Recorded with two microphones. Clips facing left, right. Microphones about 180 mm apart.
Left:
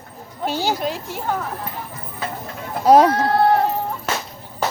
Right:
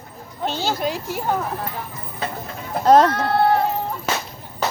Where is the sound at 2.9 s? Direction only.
10° left (ahead or behind).